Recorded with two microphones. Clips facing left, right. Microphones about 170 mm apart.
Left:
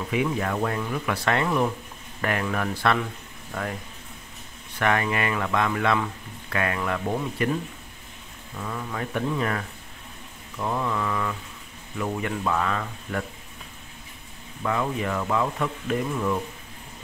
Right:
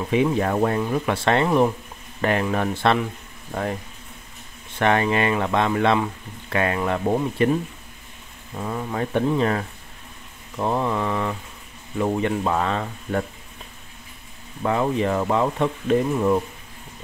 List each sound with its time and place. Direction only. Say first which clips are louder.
0.1 s speech: right 6 dB; 30° right (ahead or behind)
4.7 s speech: right 4 dB; 25° right (ahead or behind)
8.5 s speech: right 5 dB; 35° right (ahead or behind)
14.6 s speech: right 5 dB; 30° right (ahead or behind)